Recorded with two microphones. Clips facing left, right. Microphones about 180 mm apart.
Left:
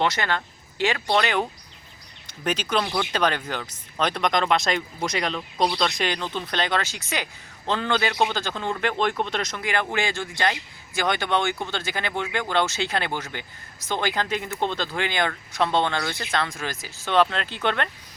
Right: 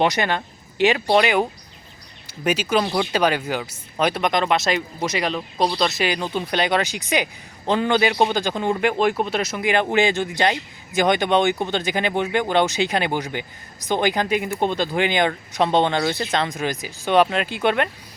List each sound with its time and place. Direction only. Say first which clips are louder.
0.0 s a man's voice: right 4 dB; 15° right (ahead or behind)